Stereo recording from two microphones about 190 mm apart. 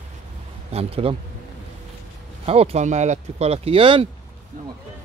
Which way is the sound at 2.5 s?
30° right (ahead or behind).